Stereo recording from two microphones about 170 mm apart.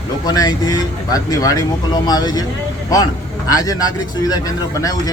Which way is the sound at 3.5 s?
20° left (ahead or behind).